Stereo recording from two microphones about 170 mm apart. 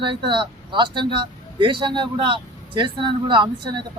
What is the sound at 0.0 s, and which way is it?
Speech, 30° right (ahead or behind).